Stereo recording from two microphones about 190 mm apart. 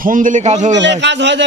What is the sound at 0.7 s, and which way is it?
Speech, 70° right (ahead or behind).